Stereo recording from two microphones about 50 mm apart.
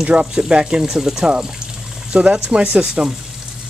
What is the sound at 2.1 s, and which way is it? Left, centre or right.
Speech, right.